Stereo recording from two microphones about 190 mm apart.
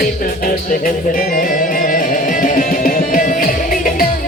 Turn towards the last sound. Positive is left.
turn(degrees=45)  # may be behind; listen again after turning